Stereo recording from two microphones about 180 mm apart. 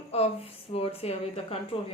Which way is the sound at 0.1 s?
35° left (ahead or behind).